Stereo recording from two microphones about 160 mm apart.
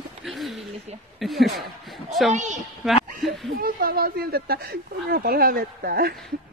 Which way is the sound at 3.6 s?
65° right (ahead or behind).